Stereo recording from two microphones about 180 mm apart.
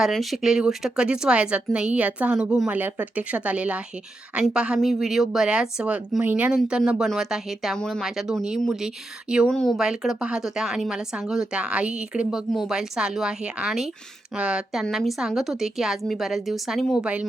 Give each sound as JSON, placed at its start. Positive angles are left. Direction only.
{"t": 0.0, "sound": "a woman's voice", "side_deg": 0}